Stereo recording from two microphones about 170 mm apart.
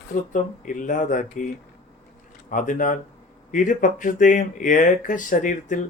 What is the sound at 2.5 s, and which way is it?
Speech, 50° left (ahead or behind).